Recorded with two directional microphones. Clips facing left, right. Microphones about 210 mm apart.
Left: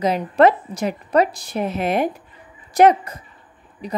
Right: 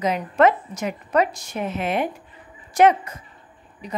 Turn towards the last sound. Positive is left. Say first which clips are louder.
# left 4 dB
turn(degrees=35)  # may be behind; listen again after turning